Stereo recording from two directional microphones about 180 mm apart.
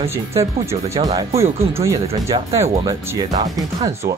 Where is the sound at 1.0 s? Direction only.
25° right (ahead or behind).